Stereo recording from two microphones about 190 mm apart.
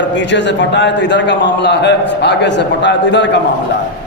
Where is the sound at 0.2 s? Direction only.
70° left (ahead or behind).